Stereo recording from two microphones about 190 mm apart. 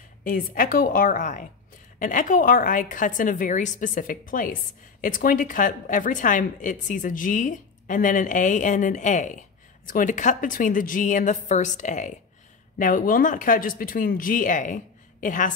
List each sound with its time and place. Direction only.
0.2 s a woman's voice: 45° left (ahead or behind)